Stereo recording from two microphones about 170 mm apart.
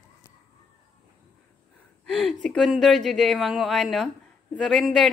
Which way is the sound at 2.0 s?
Centre (ahead or behind).